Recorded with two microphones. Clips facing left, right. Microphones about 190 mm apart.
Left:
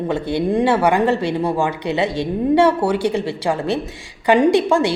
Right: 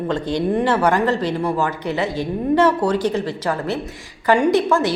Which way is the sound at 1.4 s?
25° left (ahead or behind).